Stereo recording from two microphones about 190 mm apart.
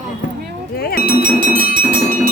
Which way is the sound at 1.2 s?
45° right (ahead or behind).